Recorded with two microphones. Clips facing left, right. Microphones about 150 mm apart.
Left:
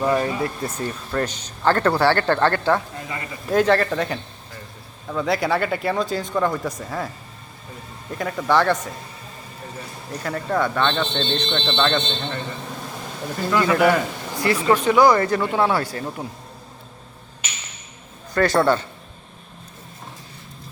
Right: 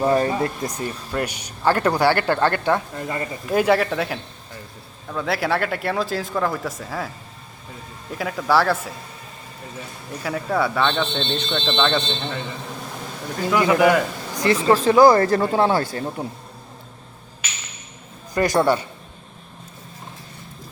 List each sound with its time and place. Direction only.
0.0 s speech: 30° right (ahead or behind)
0.6 s speech: 15° right (ahead or behind)
8.1 s speech: centre (ahead or behind)
10.2 s speech: 5° right (ahead or behind)
13.4 s speech: 15° right (ahead or behind)
14.8 s speech: 35° right (ahead or behind)
18.3 s speech: 15° right (ahead or behind)